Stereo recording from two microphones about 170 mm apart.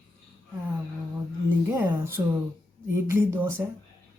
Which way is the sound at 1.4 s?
15° right (ahead or behind).